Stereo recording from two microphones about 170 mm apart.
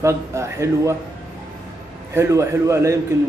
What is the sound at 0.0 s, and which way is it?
Speech, 15° right (ahead or behind).